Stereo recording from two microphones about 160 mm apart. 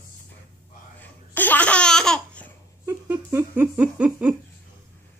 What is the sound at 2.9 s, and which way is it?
Laughter, 15° right (ahead or behind).